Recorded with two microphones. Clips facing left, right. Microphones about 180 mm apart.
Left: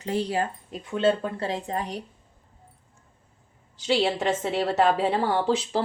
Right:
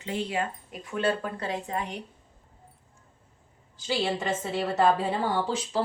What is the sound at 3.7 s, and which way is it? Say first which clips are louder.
A woman's voice: left 5 dB; 80° left.